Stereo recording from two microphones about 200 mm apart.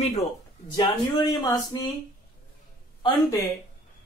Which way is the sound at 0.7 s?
20° left (ahead or behind).